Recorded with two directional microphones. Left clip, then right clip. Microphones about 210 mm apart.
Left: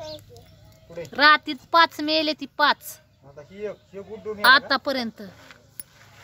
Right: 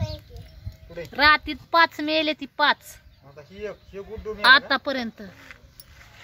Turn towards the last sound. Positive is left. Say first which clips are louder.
# left 1 dB
turn(degrees=5)  # may be behind; listen again after turning